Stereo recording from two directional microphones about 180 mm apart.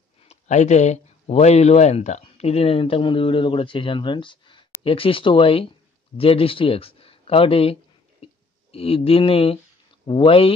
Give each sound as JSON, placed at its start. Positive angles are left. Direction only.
{"t": 0.3, "sound": "speech", "side_deg": 40}
{"t": 8.7, "sound": "speech", "side_deg": 30}